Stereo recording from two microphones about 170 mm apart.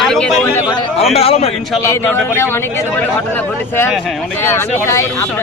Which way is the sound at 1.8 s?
15° left (ahead or behind).